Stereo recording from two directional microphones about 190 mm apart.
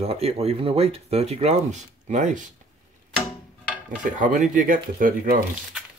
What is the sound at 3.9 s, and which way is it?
Speech, 40° right (ahead or behind).